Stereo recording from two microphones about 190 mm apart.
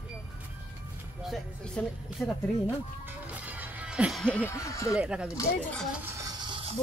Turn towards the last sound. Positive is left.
turn(degrees=-25)  # may be behind; listen again after turning